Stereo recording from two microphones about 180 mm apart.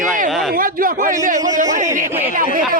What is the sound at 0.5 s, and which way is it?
Speech, 50° right (ahead or behind).